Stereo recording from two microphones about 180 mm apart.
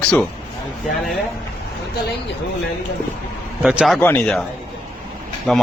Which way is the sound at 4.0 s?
10° left (ahead or behind).